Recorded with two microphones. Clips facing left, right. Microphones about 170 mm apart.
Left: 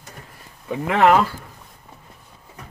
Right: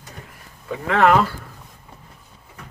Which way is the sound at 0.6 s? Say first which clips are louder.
Left 1 dB; 15° left (ahead or behind).